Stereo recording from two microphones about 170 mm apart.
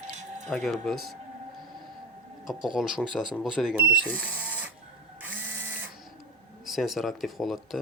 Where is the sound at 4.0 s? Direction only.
10° right (ahead or behind).